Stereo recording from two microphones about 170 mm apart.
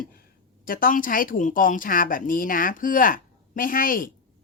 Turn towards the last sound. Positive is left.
turn(degrees=55)  # may be behind; listen again after turning